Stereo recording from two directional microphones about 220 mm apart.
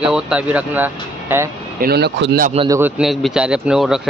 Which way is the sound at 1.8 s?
45° right (ahead or behind).